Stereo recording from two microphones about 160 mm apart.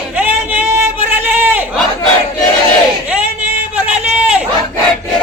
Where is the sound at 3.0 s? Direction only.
10° right (ahead or behind).